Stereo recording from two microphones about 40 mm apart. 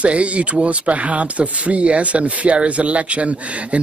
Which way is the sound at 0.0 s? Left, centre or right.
Right.